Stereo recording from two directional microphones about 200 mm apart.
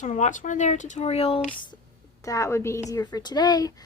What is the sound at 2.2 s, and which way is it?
A woman's voice, 15° left (ahead or behind).